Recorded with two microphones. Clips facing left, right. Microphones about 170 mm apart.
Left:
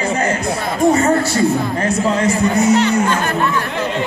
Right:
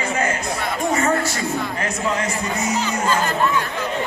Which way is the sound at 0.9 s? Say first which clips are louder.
Left 4 dB; 30° left (ahead or behind).